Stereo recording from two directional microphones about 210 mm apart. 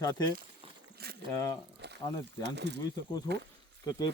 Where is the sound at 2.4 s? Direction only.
55° right (ahead or behind).